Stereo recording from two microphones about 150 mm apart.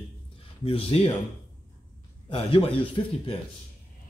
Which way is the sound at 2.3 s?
40° left (ahead or behind).